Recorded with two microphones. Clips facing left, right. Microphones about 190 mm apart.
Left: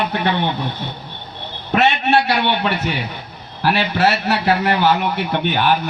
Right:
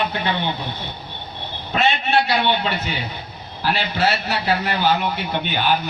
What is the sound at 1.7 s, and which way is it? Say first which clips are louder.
A man's voice: left 4 dB; 70° left (ahead or behind).